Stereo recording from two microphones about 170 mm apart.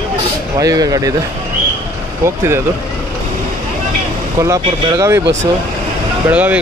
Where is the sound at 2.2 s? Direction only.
15° right (ahead or behind).